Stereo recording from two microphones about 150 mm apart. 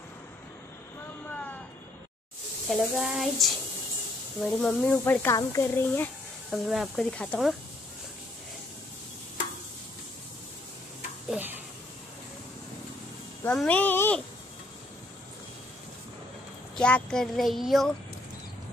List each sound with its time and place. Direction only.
1.3 s vehicle: 10° left (ahead or behind)
2.7 s speech: centre (ahead or behind)
4.9 s speech: 15° left (ahead or behind)
6.5 s speech: centre (ahead or behind)
11.2 s speech: 10° right (ahead or behind)
13.4 s speech: 10° left (ahead or behind)
16.7 s speech: 5° left (ahead or behind)